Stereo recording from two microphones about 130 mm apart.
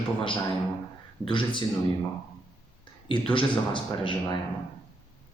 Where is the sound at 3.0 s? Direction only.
40° left (ahead or behind).